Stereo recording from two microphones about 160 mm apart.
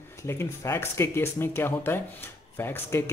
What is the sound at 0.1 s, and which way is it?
A man's voice, 15° left (ahead or behind).